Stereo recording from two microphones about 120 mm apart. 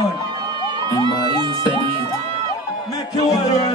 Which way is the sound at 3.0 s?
30° left (ahead or behind).